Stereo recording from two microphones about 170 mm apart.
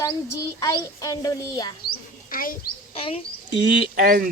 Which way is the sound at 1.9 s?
55° left (ahead or behind).